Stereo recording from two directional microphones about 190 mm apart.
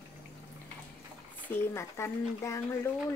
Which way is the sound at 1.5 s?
15° left (ahead or behind).